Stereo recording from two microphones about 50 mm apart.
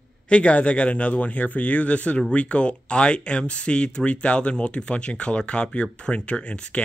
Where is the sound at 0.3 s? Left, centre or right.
Left.